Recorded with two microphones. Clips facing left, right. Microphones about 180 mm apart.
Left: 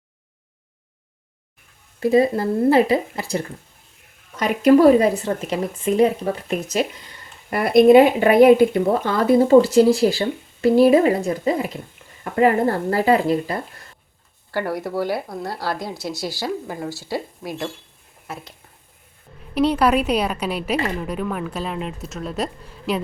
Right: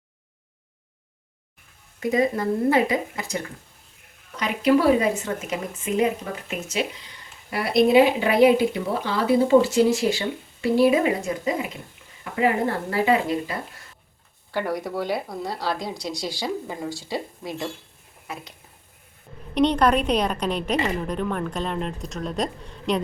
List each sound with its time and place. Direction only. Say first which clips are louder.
2.0 s speech: left 5 dB; 30° left (ahead or behind)
4.4 s speech: left 6 dB; 45° left (ahead or behind)
7.5 s speech: left 6 dB; 50° left (ahead or behind)
14.5 s speech: left 2 dB; 5° left (ahead or behind)
19.5 s speech: left 2 dB; 5° left (ahead or behind)